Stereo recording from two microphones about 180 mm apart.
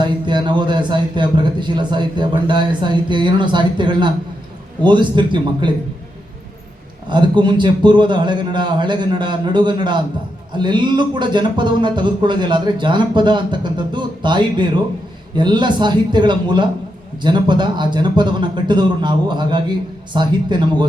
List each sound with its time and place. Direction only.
0.0 s speech: 25° right (ahead or behind)
7.1 s speech: 25° right (ahead or behind)